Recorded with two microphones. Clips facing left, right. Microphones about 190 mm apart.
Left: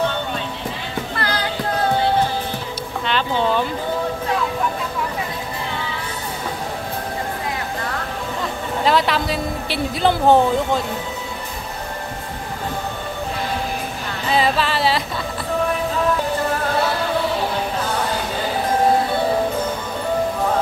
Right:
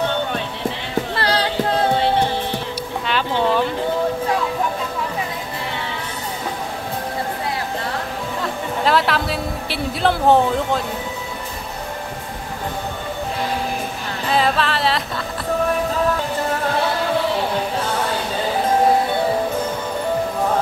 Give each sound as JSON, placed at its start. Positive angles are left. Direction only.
{"t": 1.1, "sound": "a sound", "side_deg": -30}
{"t": 3.1, "sound": "speech", "side_deg": -5}
{"t": 8.4, "sound": "speech", "side_deg": 0}
{"t": 14.3, "sound": "speech", "side_deg": 0}